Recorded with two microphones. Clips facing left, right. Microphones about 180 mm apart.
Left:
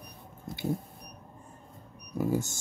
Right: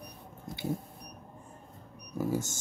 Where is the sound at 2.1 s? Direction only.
15° left (ahead or behind).